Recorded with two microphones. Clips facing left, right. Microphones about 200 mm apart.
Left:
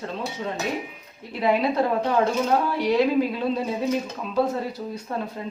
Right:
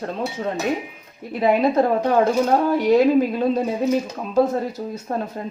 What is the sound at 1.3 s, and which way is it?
Speech, 50° right (ahead or behind).